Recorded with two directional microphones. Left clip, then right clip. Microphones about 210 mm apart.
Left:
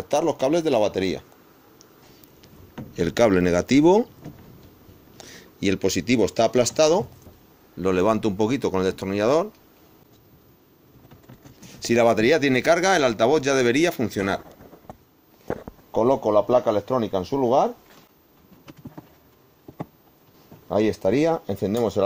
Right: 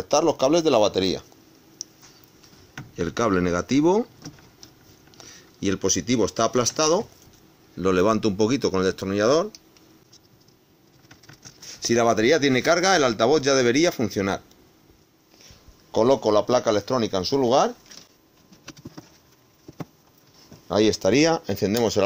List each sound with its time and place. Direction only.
0.1 s speech: centre (ahead or behind)
2.9 s speech: 20° left (ahead or behind)
5.1 s speech: 20° left (ahead or behind)
7.8 s speech: 10° right (ahead or behind)
11.8 s speech: 20° left (ahead or behind); by 14.4 s 5° left (ahead or behind)
16.0 s a man's voice: 25° right (ahead or behind)
20.7 s a man's voice: 20° right (ahead or behind)